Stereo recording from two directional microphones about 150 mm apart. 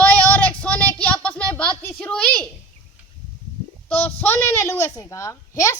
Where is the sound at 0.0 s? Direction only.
10° left (ahead or behind).